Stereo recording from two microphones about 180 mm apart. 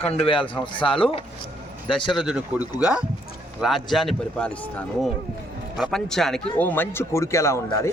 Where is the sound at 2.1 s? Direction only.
5° right (ahead or behind).